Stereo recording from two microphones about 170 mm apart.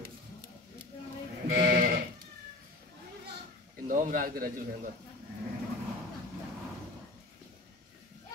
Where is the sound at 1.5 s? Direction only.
55° right (ahead or behind).